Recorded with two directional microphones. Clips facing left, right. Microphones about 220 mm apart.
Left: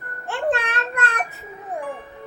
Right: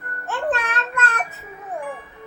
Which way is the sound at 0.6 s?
15° left (ahead or behind).